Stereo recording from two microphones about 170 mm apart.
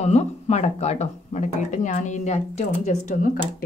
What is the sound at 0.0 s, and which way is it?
Speech, 40° left (ahead or behind).